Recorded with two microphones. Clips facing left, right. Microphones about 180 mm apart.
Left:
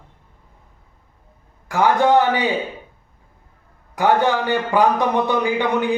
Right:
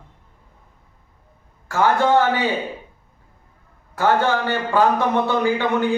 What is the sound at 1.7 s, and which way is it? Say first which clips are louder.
Speech: left 2 dB; 15° left (ahead or behind).